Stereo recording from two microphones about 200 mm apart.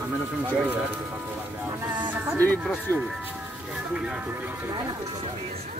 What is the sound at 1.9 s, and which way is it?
Speech, 20° right (ahead or behind).